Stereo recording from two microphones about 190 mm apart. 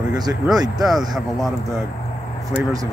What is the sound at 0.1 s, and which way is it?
Speech, 20° right (ahead or behind).